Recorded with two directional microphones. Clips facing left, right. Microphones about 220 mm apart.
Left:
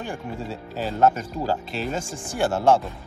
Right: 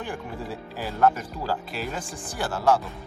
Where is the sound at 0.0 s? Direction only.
25° left (ahead or behind).